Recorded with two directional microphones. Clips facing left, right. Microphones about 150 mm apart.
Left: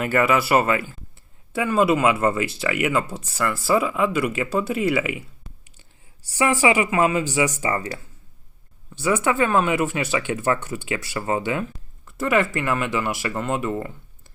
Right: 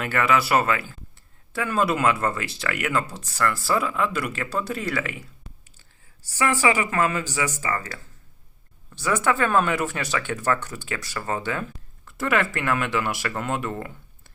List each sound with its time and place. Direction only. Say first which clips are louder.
0.0 s speech: left 3 dB; 5° left (ahead or behind)
6.5 s speech: left 3 dB; 15° left (ahead or behind)
9.0 s speech: left 2 dB; 5° left (ahead or behind)
12.0 s speech: left 3 dB; centre (ahead or behind)